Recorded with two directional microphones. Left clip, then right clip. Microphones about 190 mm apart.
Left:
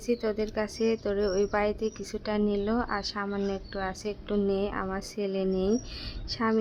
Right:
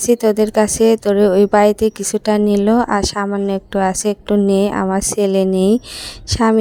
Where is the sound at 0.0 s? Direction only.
50° right (ahead or behind).